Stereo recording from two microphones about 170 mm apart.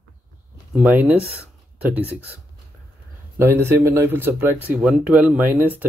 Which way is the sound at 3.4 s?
15° right (ahead or behind).